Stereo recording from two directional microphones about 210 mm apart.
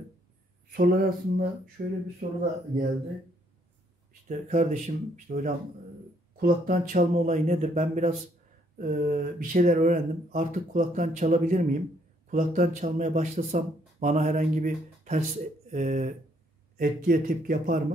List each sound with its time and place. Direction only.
0.7 s speech: 45° right (ahead or behind)
4.1 s speech: 35° right (ahead or behind)
8.7 s speech: 40° right (ahead or behind)